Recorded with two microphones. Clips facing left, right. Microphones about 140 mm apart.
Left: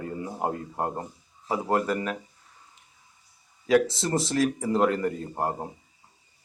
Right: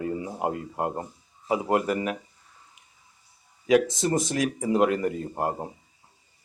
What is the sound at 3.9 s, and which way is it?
Speech, 15° right (ahead or behind).